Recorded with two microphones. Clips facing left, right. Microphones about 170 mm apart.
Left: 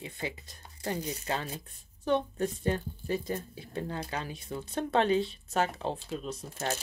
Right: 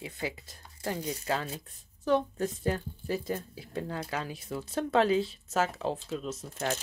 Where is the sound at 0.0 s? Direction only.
5° right (ahead or behind).